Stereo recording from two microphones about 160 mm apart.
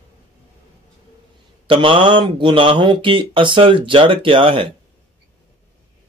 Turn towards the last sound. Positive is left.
turn(degrees=-30)  # may be behind; listen again after turning